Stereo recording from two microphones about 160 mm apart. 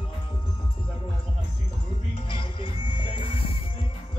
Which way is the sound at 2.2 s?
35° left (ahead or behind).